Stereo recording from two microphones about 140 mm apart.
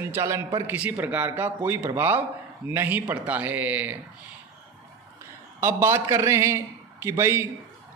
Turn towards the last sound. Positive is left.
turn(degrees=-20)  # may be behind; listen again after turning